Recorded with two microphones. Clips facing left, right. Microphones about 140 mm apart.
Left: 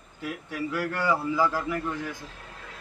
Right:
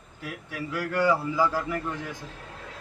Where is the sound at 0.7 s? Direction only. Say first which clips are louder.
Right 3 dB; 10° right (ahead or behind).